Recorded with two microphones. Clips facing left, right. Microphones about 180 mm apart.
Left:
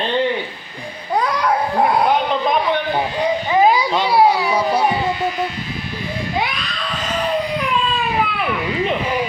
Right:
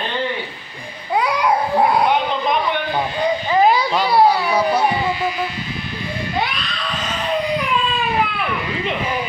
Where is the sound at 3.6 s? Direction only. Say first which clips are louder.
Even; 15° left (ahead or behind).